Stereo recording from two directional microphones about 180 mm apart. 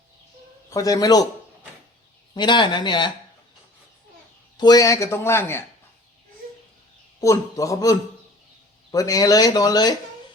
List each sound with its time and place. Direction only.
0.7 s speech: 20° left (ahead or behind)
2.3 s speech: 25° left (ahead or behind)
4.5 s speech: 20° left (ahead or behind)
7.2 s speech: 15° left (ahead or behind)